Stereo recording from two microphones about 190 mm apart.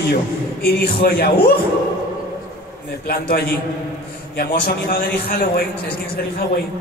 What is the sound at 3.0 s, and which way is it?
A man's voice, 55° left (ahead or behind).